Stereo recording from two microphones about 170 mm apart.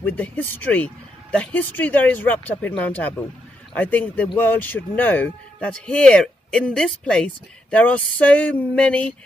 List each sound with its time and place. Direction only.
0.0 s speech: 10° left (ahead or behind)